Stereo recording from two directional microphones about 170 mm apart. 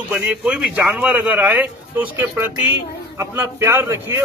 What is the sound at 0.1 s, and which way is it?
A man's voice, 5° right (ahead or behind).